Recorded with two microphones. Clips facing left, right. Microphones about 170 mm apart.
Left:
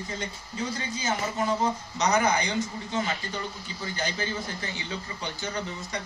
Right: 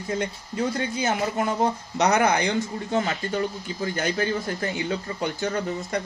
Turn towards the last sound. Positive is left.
turn(degrees=-55)  # may be behind; listen again after turning